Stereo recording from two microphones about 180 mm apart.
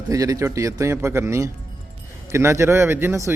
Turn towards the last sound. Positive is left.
turn(degrees=-15)  # may be behind; listen again after turning